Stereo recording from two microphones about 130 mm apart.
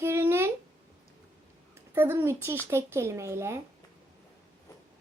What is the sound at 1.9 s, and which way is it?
A child's voice, 15° right (ahead or behind).